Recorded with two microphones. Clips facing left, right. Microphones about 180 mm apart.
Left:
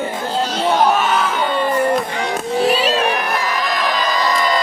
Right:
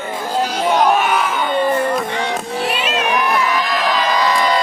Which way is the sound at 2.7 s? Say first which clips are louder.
Even; 35° left (ahead or behind).